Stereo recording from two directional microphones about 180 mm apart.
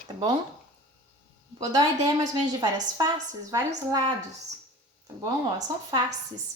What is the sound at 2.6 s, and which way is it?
Speech, 20° right (ahead or behind).